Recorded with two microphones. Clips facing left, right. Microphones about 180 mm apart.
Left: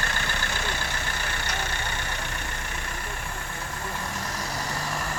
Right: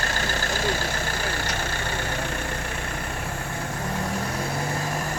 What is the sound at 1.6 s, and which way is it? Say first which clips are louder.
Vehicle: right 4 dB; 55° right (ahead or behind).